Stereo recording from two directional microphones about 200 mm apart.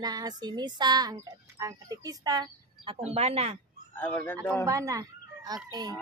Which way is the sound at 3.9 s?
10° left (ahead or behind).